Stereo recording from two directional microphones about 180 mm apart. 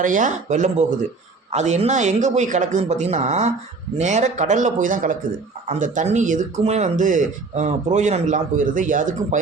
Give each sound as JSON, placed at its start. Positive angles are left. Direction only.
{"t": 0.0, "sound": "speech", "side_deg": -45}